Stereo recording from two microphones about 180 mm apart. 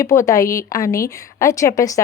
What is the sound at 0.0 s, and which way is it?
A woman's voice, 15° left (ahead or behind).